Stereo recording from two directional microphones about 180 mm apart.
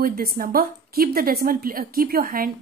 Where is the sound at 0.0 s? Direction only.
55° right (ahead or behind).